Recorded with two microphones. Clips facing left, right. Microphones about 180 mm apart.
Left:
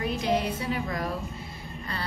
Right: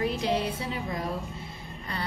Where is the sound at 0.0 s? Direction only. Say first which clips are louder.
Even; 30° right (ahead or behind).